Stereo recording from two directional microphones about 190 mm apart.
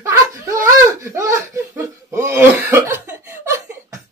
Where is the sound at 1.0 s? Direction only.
15° right (ahead or behind).